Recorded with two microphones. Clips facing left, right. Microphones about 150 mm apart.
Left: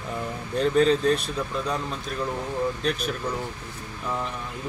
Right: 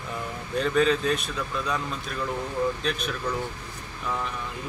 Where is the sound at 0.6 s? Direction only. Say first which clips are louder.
Left 2 dB; 35° left (ahead or behind).